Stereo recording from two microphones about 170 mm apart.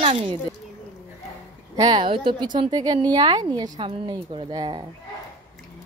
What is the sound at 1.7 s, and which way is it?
Speech, 25° right (ahead or behind).